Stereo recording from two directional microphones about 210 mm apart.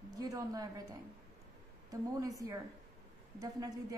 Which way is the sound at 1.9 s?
15° right (ahead or behind).